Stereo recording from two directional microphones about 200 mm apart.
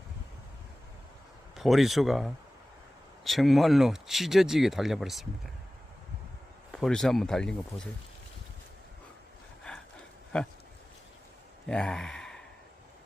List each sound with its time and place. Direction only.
1.5 s speech: centre (ahead or behind)
6.7 s speech: 5° left (ahead or behind)
9.7 s a sound: 5° left (ahead or behind)
10.3 s speech: 5° left (ahead or behind)
11.7 s speech: 5° left (ahead or behind)